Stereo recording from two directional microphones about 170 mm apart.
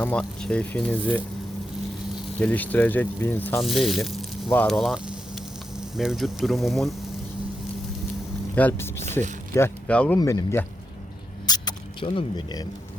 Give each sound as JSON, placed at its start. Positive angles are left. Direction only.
{"t": 0.0, "sound": "speech", "side_deg": 5}
{"t": 2.4, "sound": "speech", "side_deg": 10}
{"t": 3.6, "sound": "speech", "side_deg": 0}
{"t": 4.5, "sound": "sizzle", "side_deg": 5}
{"t": 6.0, "sound": "speech", "side_deg": 0}
{"t": 8.5, "sound": "speech", "side_deg": 10}
{"t": 10.2, "sound": "speech", "side_deg": 20}
{"t": 11.4, "sound": "mouse", "side_deg": 25}